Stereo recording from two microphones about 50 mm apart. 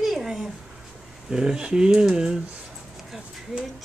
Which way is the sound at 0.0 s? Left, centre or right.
Centre.